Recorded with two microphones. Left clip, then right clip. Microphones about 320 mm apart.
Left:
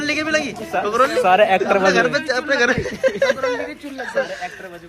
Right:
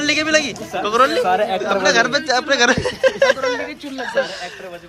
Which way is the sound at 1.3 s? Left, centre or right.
Left.